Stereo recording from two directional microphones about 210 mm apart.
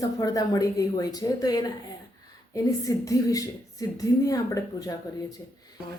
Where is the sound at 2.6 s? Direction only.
15° left (ahead or behind).